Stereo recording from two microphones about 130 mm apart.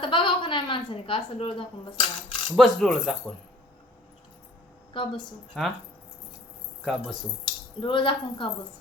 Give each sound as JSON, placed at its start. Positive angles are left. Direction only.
{"t": 0.0, "sound": "a woman's voice", "side_deg": 40}
{"t": 2.6, "sound": "speech", "side_deg": 5}
{"t": 4.9, "sound": "a woman's voice", "side_deg": 40}
{"t": 5.5, "sound": "speech", "side_deg": 0}
{"t": 6.8, "sound": "speech", "side_deg": 0}
{"t": 7.8, "sound": "a woman's voice", "side_deg": 40}